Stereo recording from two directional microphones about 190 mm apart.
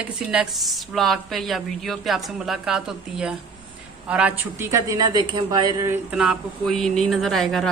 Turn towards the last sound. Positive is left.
turn(degrees=0)  # may be behind; listen again after turning